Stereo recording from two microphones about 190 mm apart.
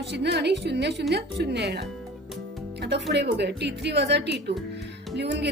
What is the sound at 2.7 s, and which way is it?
Music, 60° right (ahead or behind).